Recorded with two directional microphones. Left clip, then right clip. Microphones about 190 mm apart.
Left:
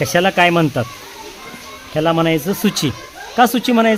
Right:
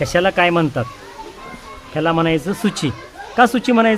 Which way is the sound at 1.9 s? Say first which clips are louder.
Left 1 dB; 20° left (ahead or behind).